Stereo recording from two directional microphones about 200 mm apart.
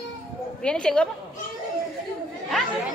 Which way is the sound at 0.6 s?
5° left (ahead or behind).